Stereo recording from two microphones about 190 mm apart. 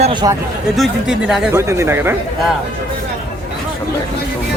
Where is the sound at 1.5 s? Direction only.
15° right (ahead or behind).